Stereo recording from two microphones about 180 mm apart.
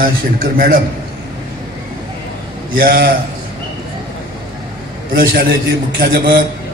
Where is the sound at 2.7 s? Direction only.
55° right (ahead or behind).